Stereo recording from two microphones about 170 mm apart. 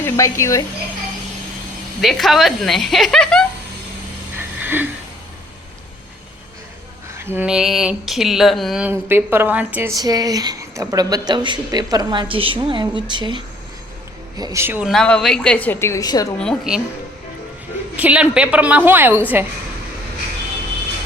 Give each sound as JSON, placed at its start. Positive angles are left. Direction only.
{"t": 0.0, "sound": "a woman's voice", "side_deg": 15}
{"t": 2.0, "sound": "speech", "side_deg": 0}
{"t": 4.4, "sound": "wheeze", "side_deg": -10}
{"t": 7.2, "sound": "speech", "side_deg": -10}
{"t": 9.9, "sound": "a woman's voice", "side_deg": -20}
{"t": 14.8, "sound": "a woman's voice", "side_deg": 5}
{"t": 16.4, "sound": "speech", "side_deg": 0}
{"t": 17.9, "sound": "a woman's voice", "side_deg": -5}